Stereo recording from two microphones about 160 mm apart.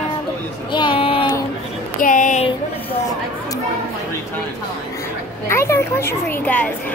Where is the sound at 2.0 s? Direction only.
55° left (ahead or behind).